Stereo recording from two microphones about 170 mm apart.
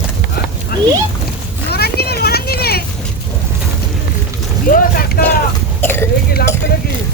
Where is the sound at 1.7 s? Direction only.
70° left (ahead or behind).